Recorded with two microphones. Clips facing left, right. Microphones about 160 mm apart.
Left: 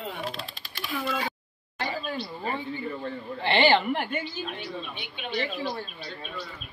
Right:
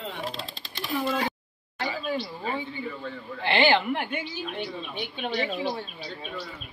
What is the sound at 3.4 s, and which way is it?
Speech, centre (ahead or behind).